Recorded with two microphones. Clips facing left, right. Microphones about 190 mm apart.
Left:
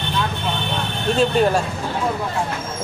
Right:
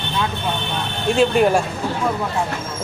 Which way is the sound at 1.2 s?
10° right (ahead or behind).